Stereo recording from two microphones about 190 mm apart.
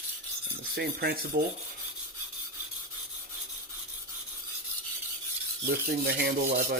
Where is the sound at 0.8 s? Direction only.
55° right (ahead or behind).